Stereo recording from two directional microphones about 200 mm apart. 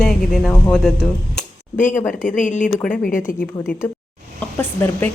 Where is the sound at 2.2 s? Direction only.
40° left (ahead or behind).